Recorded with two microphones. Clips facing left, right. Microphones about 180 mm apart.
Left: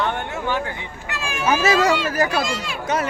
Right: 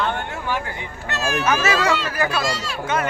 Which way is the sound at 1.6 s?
40° left (ahead or behind).